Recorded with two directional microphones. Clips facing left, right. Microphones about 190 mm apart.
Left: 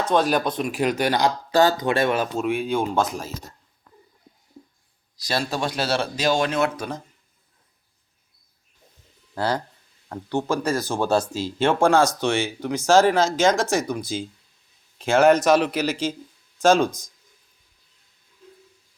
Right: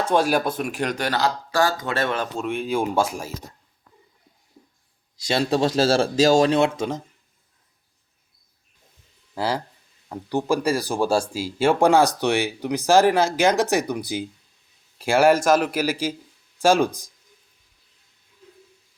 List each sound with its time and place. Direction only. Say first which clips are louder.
0.1 s speech: even; 10° right (ahead or behind)
2.7 s speech: right 1 dB; 10° right (ahead or behind)
5.2 s speech: right 5 dB; 25° right (ahead or behind)
9.3 s a man's voice: left 1 dB; 5° right (ahead or behind)